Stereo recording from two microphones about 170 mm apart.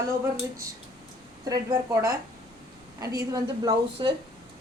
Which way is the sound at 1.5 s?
20° right (ahead or behind).